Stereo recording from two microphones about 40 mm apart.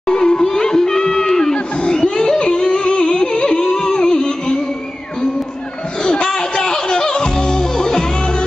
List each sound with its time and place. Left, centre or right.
0.1 s music: left
6.0 s music: left